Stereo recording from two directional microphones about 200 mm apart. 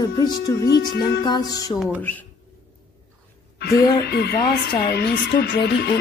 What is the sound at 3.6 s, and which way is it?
A woman's voice, 55° left (ahead or behind).